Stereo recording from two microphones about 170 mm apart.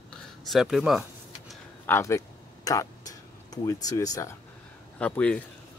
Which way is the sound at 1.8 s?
15° left (ahead or behind).